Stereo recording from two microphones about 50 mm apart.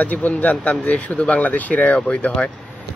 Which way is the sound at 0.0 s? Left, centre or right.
Left.